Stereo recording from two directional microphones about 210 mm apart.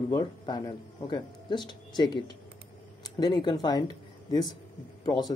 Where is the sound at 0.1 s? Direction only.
20° left (ahead or behind).